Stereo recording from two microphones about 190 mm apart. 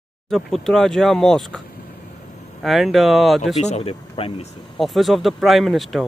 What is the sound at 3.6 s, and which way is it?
Speech, 35° left (ahead or behind).